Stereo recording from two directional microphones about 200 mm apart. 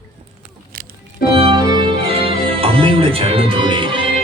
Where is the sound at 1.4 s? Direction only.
25° right (ahead or behind).